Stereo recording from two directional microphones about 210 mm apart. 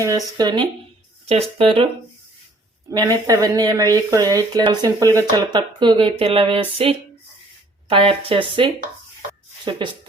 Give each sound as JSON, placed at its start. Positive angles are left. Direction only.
{"t": 0.3, "sound": "speech", "side_deg": -20}
{"t": 2.9, "sound": "speech", "side_deg": -15}